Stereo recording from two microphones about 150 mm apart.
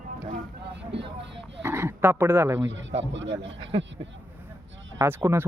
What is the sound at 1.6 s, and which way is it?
Dog, 15° right (ahead or behind).